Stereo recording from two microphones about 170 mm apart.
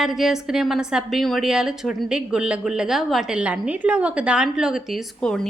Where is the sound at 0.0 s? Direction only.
Centre (ahead or behind).